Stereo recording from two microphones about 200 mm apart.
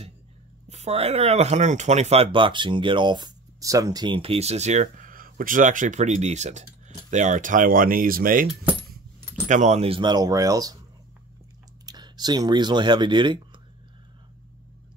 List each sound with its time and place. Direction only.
0.7 s speech: 35° right (ahead or behind)
9.5 s speech: 35° right (ahead or behind); by 10.8 s 20° right (ahead or behind)
11.8 s speech: 20° right (ahead or behind)